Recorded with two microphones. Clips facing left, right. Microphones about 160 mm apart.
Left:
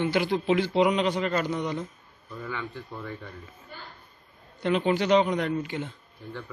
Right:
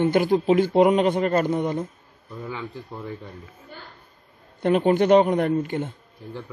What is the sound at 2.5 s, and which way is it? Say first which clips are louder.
Speech: right 2 dB; 30° right (ahead or behind).